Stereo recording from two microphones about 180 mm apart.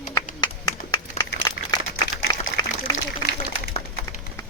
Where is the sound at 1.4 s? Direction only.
20° left (ahead or behind).